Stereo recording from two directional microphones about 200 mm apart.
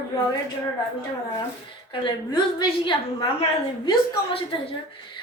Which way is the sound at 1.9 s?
25° left (ahead or behind).